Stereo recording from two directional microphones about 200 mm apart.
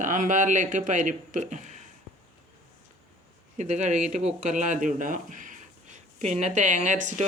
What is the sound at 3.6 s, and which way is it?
Speech, 35° right (ahead or behind).